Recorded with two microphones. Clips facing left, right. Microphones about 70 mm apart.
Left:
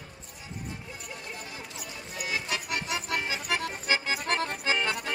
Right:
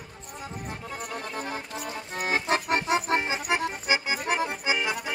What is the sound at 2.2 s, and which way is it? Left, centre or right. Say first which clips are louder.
Music: right 7 dB; right.